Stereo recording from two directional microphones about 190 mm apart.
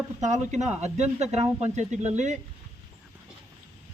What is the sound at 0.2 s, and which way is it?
Speech, 40° right (ahead or behind).